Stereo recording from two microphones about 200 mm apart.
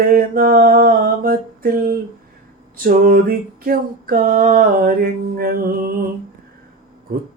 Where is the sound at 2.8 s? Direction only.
45° right (ahead or behind).